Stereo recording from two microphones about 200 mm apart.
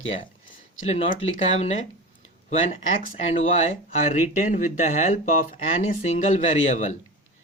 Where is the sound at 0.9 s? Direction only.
30° left (ahead or behind).